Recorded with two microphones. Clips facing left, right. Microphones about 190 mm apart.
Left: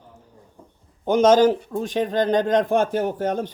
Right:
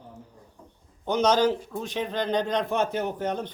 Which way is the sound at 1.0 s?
45° left (ahead or behind).